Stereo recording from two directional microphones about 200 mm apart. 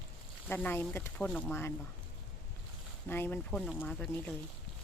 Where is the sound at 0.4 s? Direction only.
5° left (ahead or behind).